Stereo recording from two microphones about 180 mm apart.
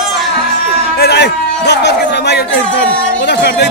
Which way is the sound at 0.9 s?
60° left (ahead or behind).